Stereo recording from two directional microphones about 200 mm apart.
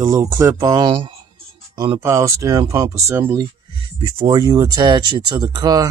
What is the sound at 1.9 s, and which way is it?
Speech, 15° right (ahead or behind).